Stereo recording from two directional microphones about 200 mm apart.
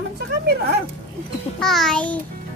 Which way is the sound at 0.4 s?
55° right (ahead or behind).